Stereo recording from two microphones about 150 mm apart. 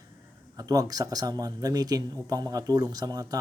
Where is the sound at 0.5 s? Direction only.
25° right (ahead or behind).